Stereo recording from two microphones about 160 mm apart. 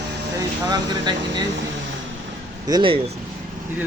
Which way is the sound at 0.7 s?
25° right (ahead or behind).